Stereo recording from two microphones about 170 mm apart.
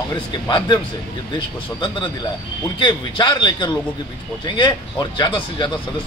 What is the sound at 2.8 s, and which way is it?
Speech, 25° left (ahead or behind).